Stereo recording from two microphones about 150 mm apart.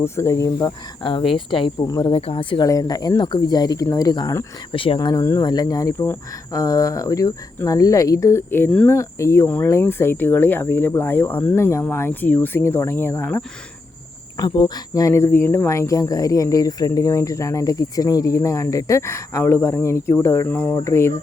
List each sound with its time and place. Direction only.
0.0 s speech: 20° left (ahead or behind)
1.5 s speech: 35° left (ahead or behind)
2.6 s speech: 25° left (ahead or behind)
4.7 s speech: 35° left (ahead or behind); by 13.4 s 15° left (ahead or behind)
14.3 s speech: 30° left (ahead or behind)